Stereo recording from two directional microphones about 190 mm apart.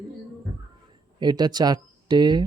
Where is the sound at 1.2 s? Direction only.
20° right (ahead or behind).